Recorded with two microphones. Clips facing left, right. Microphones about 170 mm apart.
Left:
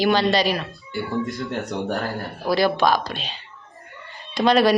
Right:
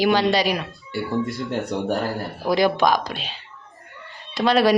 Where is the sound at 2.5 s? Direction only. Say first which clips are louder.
Right 1 dB; 15° right (ahead or behind).